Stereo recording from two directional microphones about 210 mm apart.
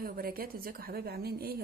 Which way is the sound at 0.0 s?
45° right (ahead or behind).